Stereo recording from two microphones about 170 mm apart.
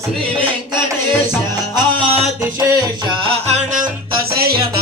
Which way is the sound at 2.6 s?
20° right (ahead or behind).